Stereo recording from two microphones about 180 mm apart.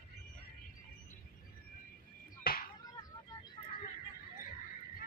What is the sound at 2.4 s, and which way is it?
Music, 55° left (ahead or behind).